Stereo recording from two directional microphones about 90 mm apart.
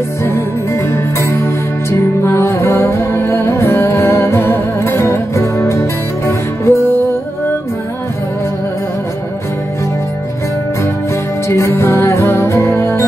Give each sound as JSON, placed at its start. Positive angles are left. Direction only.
{"t": 1.2, "sound": "music", "side_deg": 30}
{"t": 11.4, "sound": "music", "side_deg": 30}